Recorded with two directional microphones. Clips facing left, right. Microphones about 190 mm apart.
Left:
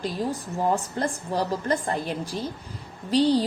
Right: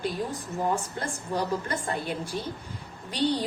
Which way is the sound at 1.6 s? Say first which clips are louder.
Left 5 dB; 35° left (ahead or behind).